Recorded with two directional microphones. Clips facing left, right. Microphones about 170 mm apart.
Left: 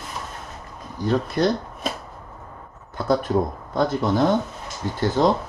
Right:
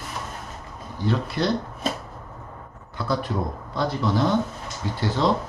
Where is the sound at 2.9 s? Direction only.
45° left (ahead or behind).